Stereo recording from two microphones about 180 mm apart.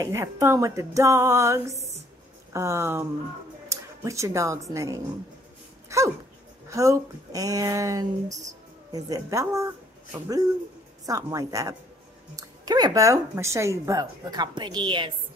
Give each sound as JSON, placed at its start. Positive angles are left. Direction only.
{"t": 0.0, "sound": "speech", "side_deg": -15}
{"t": 5.9, "sound": "dog", "side_deg": -15}
{"t": 6.7, "sound": "a woman's voice", "side_deg": -20}